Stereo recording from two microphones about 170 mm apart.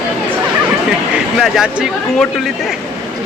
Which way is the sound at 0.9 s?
Centre (ahead or behind).